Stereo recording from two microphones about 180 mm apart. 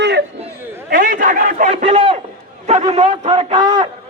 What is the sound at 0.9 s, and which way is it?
Speech, 50° right (ahead or behind).